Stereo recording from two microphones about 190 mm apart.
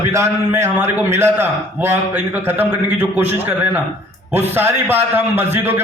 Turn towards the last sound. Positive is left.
turn(degrees=-10)  # may be behind; listen again after turning